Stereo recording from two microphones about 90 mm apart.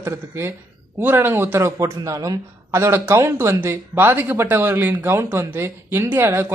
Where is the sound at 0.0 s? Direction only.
30° right (ahead or behind).